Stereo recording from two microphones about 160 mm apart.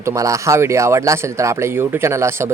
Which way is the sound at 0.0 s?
20° right (ahead or behind).